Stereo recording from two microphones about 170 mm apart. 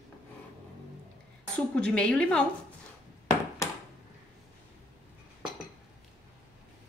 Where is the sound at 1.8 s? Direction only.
5° left (ahead or behind).